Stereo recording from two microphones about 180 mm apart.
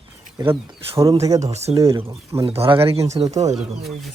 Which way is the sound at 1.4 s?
35° right (ahead or behind).